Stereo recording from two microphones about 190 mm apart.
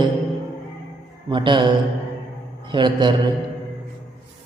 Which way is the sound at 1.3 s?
25° right (ahead or behind).